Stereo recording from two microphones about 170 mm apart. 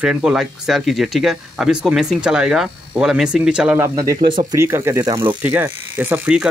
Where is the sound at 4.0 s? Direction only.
25° right (ahead or behind).